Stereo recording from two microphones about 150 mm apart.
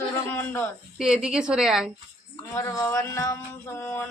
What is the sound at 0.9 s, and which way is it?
Speech, 5° right (ahead or behind).